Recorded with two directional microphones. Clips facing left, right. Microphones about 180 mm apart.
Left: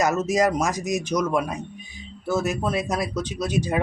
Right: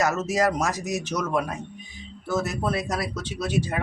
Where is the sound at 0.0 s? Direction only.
15° left (ahead or behind).